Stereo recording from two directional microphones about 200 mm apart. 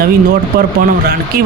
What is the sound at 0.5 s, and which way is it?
Speech, 50° right (ahead or behind).